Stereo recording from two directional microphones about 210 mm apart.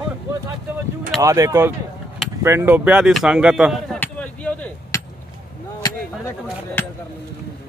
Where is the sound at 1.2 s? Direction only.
15° right (ahead or behind).